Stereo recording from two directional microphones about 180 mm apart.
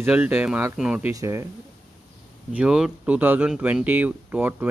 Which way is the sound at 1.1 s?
15° right (ahead or behind).